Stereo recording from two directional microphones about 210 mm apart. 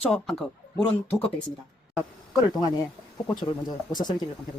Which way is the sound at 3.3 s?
20° left (ahead or behind).